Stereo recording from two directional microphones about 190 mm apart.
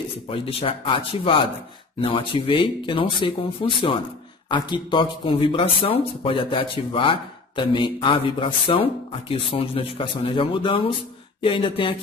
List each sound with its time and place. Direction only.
0.3 s speech: 30° left (ahead or behind)